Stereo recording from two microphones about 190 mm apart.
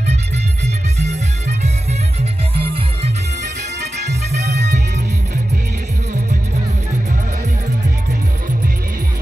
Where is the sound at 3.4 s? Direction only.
60° right (ahead or behind).